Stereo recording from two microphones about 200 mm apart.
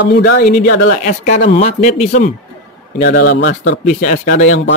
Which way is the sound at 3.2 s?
60° left (ahead or behind).